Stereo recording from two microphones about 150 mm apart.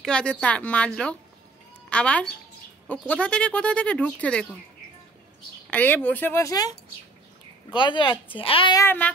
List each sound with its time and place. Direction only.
0.0 s speech: 5° left (ahead or behind)
5.7 s speech: 10° left (ahead or behind); by 8.7 s 35° left (ahead or behind)
8.7 s speech: 15° left (ahead or behind)